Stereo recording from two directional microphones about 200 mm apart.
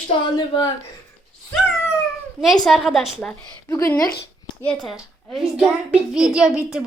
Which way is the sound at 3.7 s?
15° left (ahead or behind).